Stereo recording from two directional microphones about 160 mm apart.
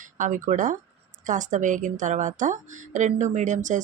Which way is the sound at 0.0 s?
55° right (ahead or behind).